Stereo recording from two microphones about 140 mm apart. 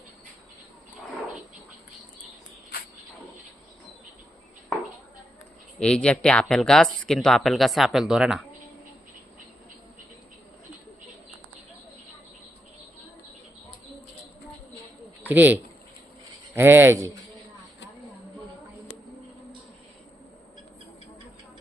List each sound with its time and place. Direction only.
5.8 s speech: 5° left (ahead or behind)
15.3 s speech: 10° right (ahead or behind)
16.6 s speech: 15° right (ahead or behind)